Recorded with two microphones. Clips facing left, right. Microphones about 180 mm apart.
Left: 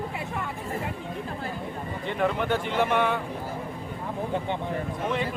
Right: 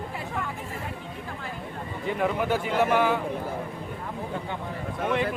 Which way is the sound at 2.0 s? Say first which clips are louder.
Even; 5° right (ahead or behind).